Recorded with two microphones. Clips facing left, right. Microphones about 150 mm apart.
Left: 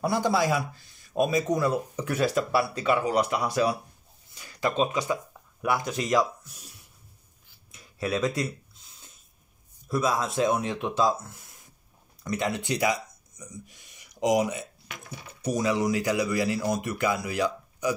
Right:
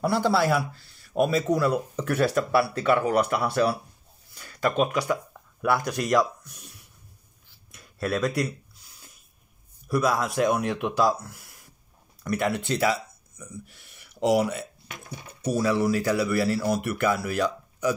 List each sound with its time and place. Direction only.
0.0 s speech: 15° left (ahead or behind)
2.9 s speech: 55° right (ahead or behind)
3.4 s speech: 15° left (ahead or behind)
7.7 s a sound: 20° left (ahead or behind)
9.8 s speech: 25° left (ahead or behind)